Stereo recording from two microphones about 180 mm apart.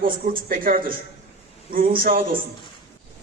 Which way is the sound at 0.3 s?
50° right (ahead or behind).